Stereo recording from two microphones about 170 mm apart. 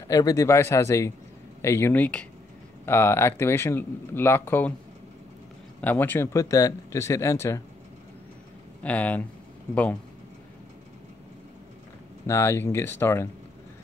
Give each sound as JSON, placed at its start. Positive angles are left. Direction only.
{"t": 0.1, "sound": "speech", "side_deg": 20}
{"t": 5.8, "sound": "speech", "side_deg": 10}
{"t": 8.8, "sound": "speech", "side_deg": 10}
{"t": 12.3, "sound": "speech", "side_deg": 15}